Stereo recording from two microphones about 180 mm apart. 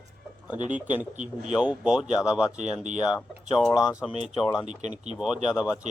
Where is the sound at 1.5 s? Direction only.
5° right (ahead or behind).